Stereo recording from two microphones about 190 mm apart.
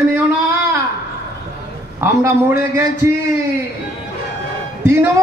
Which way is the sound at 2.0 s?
15° right (ahead or behind).